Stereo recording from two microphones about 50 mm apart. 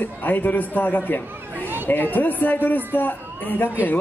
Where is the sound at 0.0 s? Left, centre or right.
Left.